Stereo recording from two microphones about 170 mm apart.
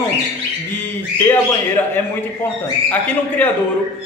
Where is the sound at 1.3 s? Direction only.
10° left (ahead or behind).